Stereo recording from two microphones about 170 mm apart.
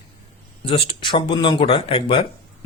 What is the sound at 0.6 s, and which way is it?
A man's voice, 30° left (ahead or behind).